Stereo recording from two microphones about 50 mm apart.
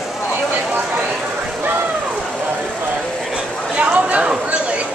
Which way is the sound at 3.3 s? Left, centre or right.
Right.